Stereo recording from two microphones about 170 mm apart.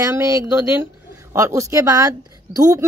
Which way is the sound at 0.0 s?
20° right (ahead or behind).